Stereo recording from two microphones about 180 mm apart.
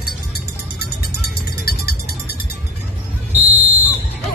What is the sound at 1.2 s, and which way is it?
Music, 60° left (ahead or behind).